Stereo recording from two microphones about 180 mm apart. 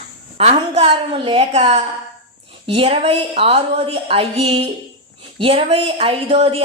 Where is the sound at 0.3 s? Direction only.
35° right (ahead or behind).